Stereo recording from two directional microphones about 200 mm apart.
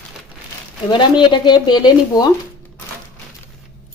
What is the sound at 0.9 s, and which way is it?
Speech, 20° left (ahead or behind).